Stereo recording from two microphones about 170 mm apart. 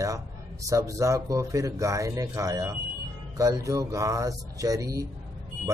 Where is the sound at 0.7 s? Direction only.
20° right (ahead or behind).